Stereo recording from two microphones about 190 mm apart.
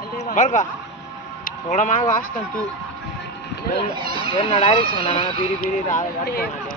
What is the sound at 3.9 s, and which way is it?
Speech, 25° right (ahead or behind).